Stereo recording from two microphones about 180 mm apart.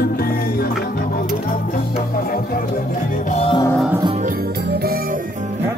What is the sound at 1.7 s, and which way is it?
Music, 50° left (ahead or behind).